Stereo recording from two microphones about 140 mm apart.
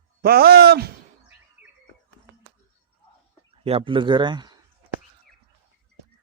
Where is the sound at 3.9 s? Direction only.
35° right (ahead or behind).